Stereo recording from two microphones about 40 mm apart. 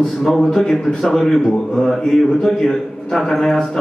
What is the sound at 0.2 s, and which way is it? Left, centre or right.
A man's voice, centre.